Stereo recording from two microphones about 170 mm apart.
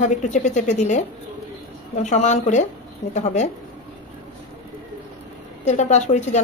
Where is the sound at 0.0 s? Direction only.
45° left (ahead or behind).